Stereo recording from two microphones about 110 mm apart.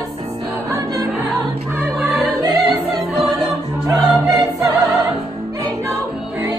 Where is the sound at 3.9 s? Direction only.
30° right (ahead or behind).